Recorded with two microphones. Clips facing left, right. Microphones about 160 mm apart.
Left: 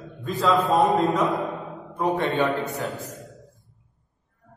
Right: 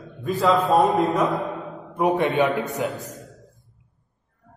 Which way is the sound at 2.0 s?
20° right (ahead or behind).